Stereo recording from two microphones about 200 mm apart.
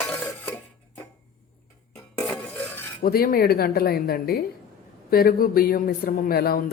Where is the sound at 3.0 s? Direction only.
50° left (ahead or behind).